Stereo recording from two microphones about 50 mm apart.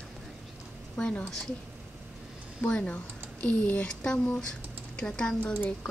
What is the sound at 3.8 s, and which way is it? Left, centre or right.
A woman's voice, centre.